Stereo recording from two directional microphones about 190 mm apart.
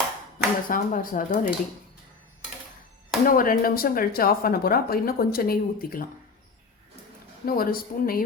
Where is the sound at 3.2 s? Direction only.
45° left (ahead or behind).